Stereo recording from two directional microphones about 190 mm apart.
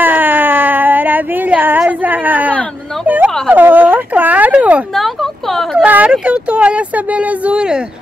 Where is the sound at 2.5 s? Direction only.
5° left (ahead or behind).